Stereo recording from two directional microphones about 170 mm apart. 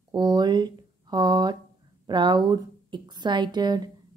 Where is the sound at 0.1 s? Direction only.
25° right (ahead or behind).